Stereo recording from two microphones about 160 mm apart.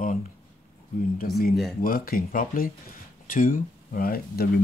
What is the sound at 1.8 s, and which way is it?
Speech, 65° left (ahead or behind).